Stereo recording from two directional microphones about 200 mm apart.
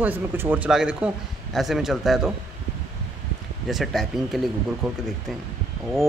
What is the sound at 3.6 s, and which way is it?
Speech, centre (ahead or behind).